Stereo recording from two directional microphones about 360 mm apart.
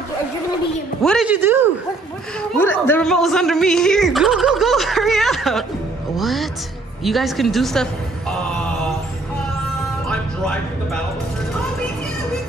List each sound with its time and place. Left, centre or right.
1.0 s speech: centre
7.0 s a sound: centre
10.0 s music: centre